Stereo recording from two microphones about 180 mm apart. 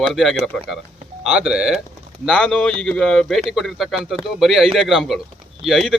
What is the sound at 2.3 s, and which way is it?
Speech, 5° left (ahead or behind).